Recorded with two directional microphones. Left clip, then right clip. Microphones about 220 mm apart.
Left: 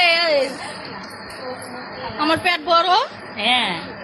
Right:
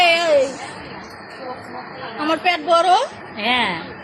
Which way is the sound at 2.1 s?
10° right (ahead or behind).